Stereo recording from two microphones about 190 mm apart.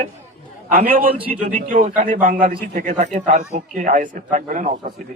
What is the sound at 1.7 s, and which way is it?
A man's voice, 40° right (ahead or behind).